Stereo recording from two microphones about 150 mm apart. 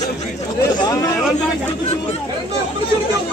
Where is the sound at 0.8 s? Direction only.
20° left (ahead or behind).